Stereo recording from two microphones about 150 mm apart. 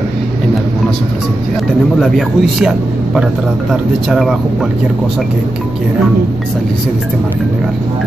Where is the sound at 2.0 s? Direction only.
Centre (ahead or behind).